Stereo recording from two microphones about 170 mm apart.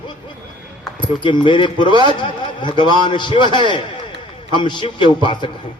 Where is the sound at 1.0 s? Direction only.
30° left (ahead or behind).